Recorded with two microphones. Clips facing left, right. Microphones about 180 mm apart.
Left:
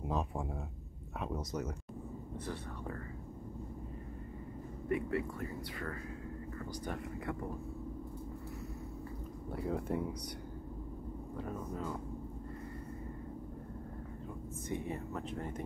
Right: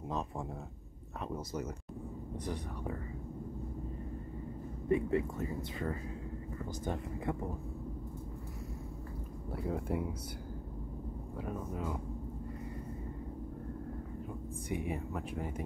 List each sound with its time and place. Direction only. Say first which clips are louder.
0.1 s speech: left 1 dB; 10° left (ahead or behind)
2.4 s speech: right 3 dB; 15° right (ahead or behind)
4.8 s speech: right 4 dB; 25° right (ahead or behind)
9.5 s speech: even; centre (ahead or behind)
11.3 s speech: right 1 dB; 10° right (ahead or behind)
14.7 s speech: right 2 dB; 10° right (ahead or behind)